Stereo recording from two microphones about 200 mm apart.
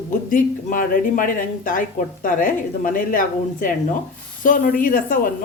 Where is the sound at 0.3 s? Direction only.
40° left (ahead or behind).